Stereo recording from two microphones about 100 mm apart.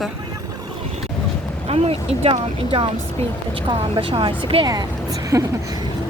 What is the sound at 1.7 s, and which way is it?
Speech, 75° right (ahead or behind).